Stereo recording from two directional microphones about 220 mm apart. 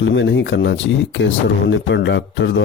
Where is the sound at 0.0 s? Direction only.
55° left (ahead or behind).